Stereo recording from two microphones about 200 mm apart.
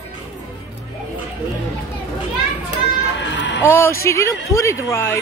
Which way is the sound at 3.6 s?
15° left (ahead or behind).